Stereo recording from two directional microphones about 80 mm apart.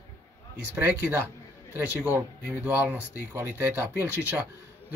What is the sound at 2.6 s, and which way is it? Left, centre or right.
Speech, right.